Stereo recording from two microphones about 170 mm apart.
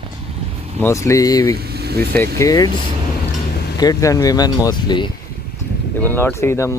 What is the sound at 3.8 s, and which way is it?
Speech, 20° left (ahead or behind).